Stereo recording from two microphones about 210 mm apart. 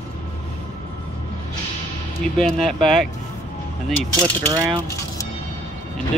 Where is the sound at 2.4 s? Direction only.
Centre (ahead or behind).